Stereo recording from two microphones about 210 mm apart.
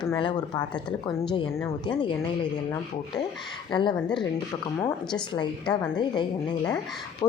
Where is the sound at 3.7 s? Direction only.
20° left (ahead or behind).